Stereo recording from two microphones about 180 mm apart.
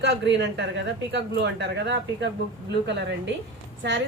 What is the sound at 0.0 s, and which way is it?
A woman's voice, 75° right (ahead or behind).